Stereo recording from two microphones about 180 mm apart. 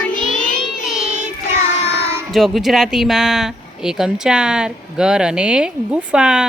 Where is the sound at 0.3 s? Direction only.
45° left (ahead or behind).